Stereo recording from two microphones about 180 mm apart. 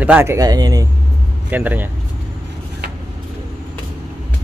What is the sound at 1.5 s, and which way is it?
Speech, 10° right (ahead or behind).